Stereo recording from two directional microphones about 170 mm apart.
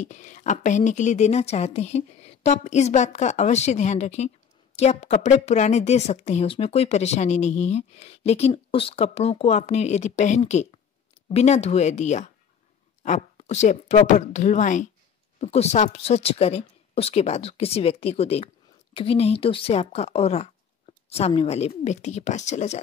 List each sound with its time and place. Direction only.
0.0 s a woman's voice: 45° left (ahead or behind)